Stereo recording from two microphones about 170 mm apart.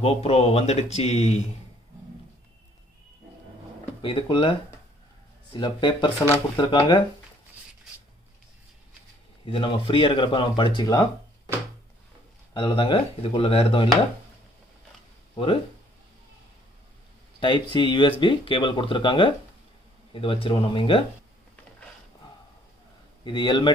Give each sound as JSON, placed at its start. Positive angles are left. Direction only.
{"t": 0.0, "sound": "speech", "side_deg": 35}
{"t": 4.0, "sound": "speech", "side_deg": 30}
{"t": 9.5, "sound": "speech", "side_deg": 30}
{"t": 12.5, "sound": "speech", "side_deg": 30}
{"t": 15.3, "sound": "speech", "side_deg": 30}
{"t": 17.4, "sound": "speech", "side_deg": 25}
{"t": 23.2, "sound": "speech", "side_deg": 25}